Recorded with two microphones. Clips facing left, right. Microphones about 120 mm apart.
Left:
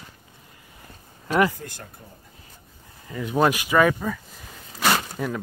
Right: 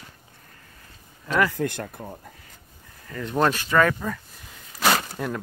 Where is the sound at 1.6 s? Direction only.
65° right (ahead or behind).